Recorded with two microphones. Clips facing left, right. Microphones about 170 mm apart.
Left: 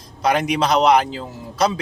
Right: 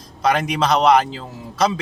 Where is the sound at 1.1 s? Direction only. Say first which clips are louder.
Left 2 dB; centre (ahead or behind).